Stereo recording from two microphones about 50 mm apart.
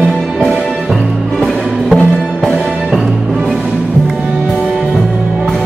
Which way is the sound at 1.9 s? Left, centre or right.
Left.